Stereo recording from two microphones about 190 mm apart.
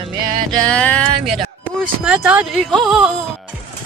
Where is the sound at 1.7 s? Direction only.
5° right (ahead or behind).